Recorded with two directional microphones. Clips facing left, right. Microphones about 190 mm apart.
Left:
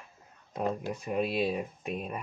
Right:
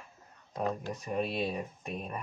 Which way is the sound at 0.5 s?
10° left (ahead or behind).